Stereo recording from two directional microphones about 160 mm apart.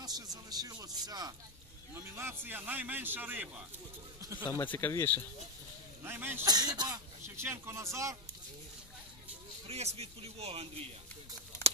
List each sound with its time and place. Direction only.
0.0 s a sound: 25° right (ahead or behind)
2.0 s a man's voice: 15° right (ahead or behind)
4.2 s a sound: 20° right (ahead or behind)
4.5 s speech: 15° left (ahead or behind)
6.0 s a man's voice: 15° right (ahead or behind)
6.4 s speech: 25° right (ahead or behind)
9.7 s speech: 40° right (ahead or behind)